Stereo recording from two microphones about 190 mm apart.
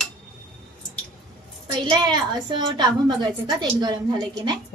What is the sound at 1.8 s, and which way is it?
A woman's voice, 25° right (ahead or behind).